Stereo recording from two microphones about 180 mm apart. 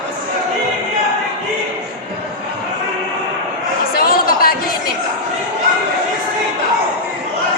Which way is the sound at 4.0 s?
55° left (ahead or behind).